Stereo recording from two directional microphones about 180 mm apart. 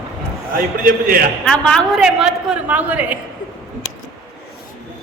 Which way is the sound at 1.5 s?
5° left (ahead or behind).